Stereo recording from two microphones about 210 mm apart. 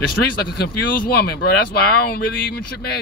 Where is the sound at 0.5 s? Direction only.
45° left (ahead or behind).